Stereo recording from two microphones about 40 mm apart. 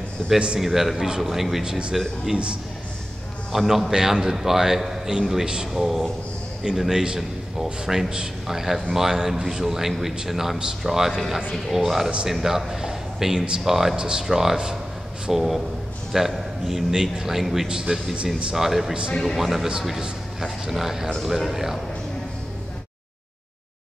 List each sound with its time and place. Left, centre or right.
0.6 s a man's voice: centre
1.6 s a man's voice: centre
3.5 s a man's voice: centre
13.9 s a man's voice: right
14.2 s a man's voice: centre
20.7 s a man's voice: centre